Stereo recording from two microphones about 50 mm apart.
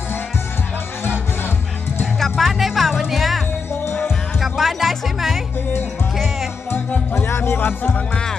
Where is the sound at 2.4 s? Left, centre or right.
Centre.